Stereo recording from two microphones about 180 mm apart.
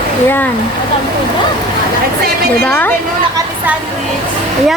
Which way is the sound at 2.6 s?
10° left (ahead or behind).